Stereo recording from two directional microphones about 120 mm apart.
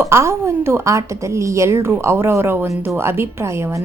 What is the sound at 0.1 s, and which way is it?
A woman's voice, 20° right (ahead or behind).